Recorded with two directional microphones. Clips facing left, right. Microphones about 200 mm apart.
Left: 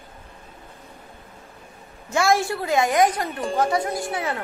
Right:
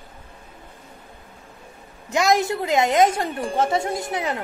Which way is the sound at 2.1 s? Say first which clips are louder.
Right 1 dB; 20° right (ahead or behind).